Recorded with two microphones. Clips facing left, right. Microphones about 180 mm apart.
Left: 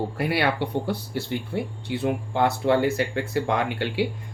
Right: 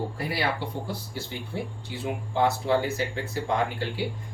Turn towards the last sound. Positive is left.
turn(degrees=70)  # may be behind; listen again after turning